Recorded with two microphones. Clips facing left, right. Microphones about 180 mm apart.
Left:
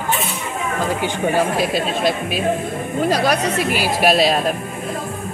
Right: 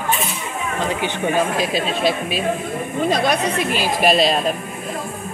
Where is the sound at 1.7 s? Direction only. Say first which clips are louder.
Even; 55° left (ahead or behind).